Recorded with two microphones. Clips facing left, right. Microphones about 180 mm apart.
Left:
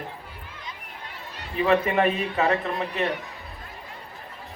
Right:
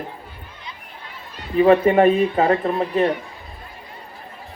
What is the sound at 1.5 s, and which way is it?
Speech, 30° right (ahead or behind).